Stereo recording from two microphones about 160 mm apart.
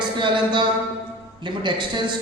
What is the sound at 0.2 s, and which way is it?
A man's voice, 30° right (ahead or behind).